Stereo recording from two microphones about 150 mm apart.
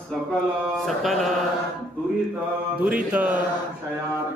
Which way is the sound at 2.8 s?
10° right (ahead or behind).